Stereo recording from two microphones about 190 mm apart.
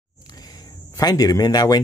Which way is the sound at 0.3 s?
20° left (ahead or behind).